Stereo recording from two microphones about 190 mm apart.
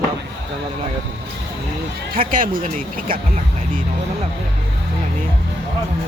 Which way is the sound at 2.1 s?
45° right (ahead or behind).